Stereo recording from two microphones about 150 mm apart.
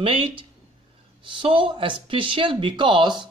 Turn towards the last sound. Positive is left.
turn(degrees=-30)  # may be behind; listen again after turning